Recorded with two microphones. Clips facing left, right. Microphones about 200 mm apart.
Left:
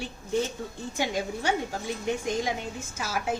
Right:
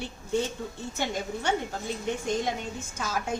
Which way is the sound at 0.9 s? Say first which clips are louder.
Left 3 dB; 10° left (ahead or behind).